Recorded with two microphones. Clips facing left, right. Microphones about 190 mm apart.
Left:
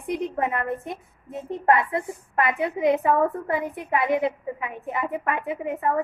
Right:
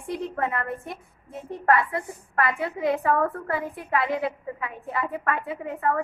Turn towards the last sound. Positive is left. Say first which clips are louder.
# left 1 dB
turn(degrees=20)  # may be behind; listen again after turning